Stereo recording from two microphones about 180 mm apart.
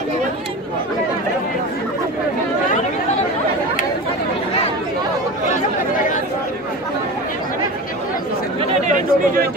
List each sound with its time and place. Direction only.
8.8 s chatter: 50° right (ahead or behind)